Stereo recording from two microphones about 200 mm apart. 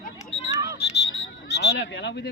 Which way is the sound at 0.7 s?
55° left (ahead or behind).